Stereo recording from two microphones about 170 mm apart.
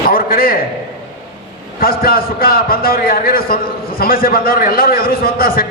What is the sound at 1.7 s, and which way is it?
A man's voice, 60° left (ahead or behind).